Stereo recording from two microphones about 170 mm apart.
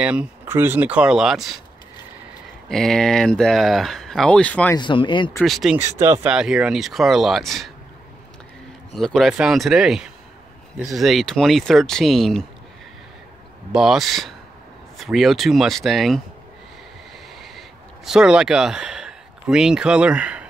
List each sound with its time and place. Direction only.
0.0 s speech: 5° right (ahead or behind)
2.7 s speech: centre (ahead or behind)
4.7 s speech: 25° left (ahead or behind)
5.4 s speech: centre (ahead or behind)
8.9 s speech: centre (ahead or behind)
13.7 s speech: 5° right (ahead or behind)
17.4 s a sound: centre (ahead or behind)